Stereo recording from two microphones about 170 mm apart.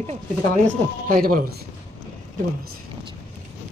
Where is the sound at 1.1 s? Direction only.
55° right (ahead or behind).